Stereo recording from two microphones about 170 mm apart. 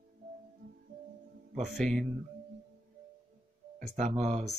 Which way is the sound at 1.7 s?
5° left (ahead or behind).